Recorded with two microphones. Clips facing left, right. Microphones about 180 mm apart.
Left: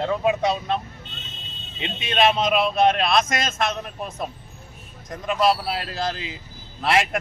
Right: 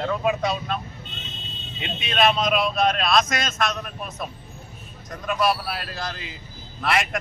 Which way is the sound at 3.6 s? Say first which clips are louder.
Left 1 dB; 25° left (ahead or behind).